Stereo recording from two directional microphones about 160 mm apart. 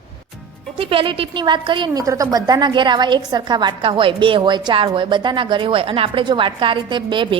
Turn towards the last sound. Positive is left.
turn(degrees=-30)  # may be behind; listen again after turning